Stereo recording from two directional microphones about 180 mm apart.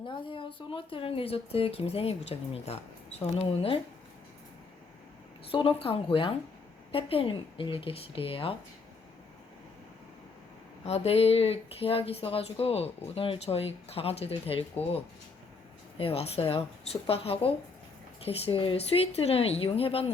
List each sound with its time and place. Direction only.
0.0 s speech: 30° left (ahead or behind)
5.5 s speech: 30° left (ahead or behind)
10.8 s speech: 35° left (ahead or behind)
16.0 s speech: 35° left (ahead or behind)